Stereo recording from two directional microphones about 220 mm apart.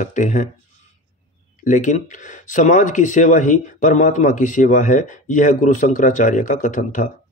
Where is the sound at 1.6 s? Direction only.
35° left (ahead or behind).